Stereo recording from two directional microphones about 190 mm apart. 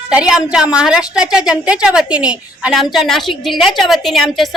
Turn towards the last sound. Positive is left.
turn(degrees=0)  # may be behind; listen again after turning